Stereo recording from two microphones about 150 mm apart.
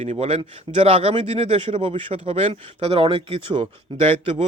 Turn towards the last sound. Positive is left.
turn(degrees=-35)  # may be behind; listen again after turning